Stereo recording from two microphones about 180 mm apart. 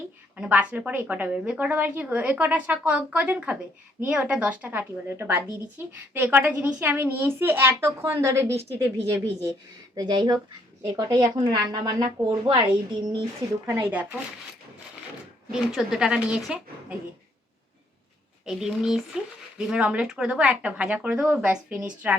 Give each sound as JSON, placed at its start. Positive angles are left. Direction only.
{"t": 0.3, "sound": "a woman's voice", "side_deg": -5}
{"t": 13.7, "sound": "a woman's voice", "side_deg": -10}
{"t": 15.5, "sound": "a woman's voice", "side_deg": 0}
{"t": 18.4, "sound": "a woman's voice", "side_deg": -5}